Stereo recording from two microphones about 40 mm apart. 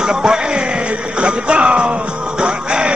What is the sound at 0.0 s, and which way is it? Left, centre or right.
Music, centre.